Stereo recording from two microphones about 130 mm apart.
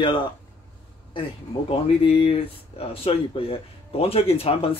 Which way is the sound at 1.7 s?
45° left (ahead or behind).